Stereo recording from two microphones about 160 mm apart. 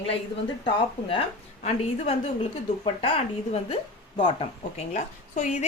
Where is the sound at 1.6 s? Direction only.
40° left (ahead or behind).